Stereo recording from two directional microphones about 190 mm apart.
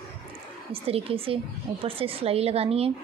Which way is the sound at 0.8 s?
30° right (ahead or behind).